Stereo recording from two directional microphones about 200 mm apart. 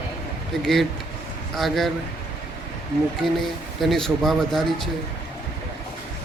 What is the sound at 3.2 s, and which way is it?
A man's voice, centre (ahead or behind).